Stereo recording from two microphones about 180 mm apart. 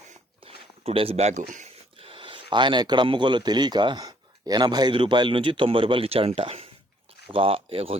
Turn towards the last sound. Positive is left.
turn(degrees=-35)  # may be behind; listen again after turning